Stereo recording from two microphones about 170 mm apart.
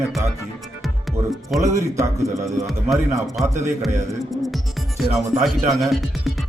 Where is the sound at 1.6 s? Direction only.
15° right (ahead or behind).